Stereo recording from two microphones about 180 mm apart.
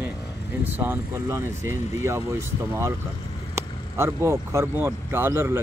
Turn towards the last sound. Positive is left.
turn(degrees=-15)  # may be behind; listen again after turning